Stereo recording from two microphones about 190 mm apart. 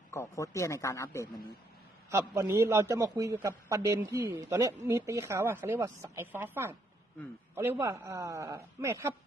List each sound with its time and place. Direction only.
0.1 s a man's voice: 15° left (ahead or behind)
2.0 s a man's voice: 15° right (ahead or behind)